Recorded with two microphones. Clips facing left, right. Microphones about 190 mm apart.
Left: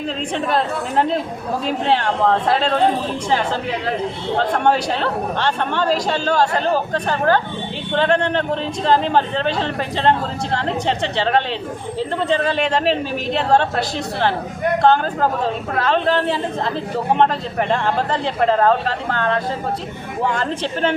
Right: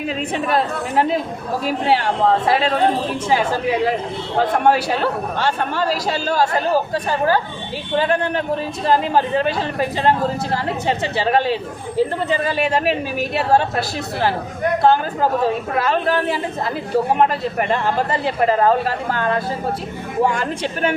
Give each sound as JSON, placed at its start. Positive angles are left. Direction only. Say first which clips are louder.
{"t": 0.3, "sound": "speech", "louder": "even", "side_deg": -5}